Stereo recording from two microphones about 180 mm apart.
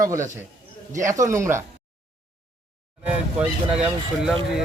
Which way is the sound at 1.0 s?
15° right (ahead or behind).